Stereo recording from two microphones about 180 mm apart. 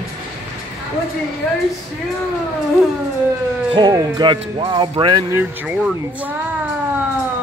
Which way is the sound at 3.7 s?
25° right (ahead or behind).